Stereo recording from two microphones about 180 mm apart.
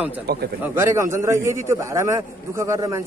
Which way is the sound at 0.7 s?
15° right (ahead or behind).